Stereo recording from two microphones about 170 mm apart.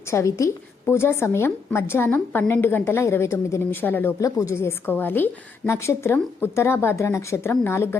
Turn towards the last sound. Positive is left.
turn(degrees=15)  # may be behind; listen again after turning